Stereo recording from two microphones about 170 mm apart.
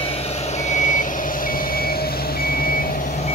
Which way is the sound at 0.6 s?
45° left (ahead or behind).